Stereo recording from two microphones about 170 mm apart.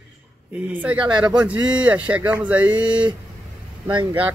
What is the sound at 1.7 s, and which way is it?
Speech, 5° right (ahead or behind).